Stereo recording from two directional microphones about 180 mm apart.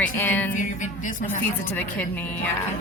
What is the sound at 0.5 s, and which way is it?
Speech, 45° left (ahead or behind).